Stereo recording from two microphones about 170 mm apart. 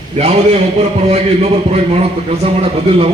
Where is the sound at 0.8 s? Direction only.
35° right (ahead or behind).